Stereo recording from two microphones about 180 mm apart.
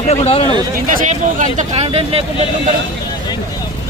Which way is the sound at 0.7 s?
45° right (ahead or behind).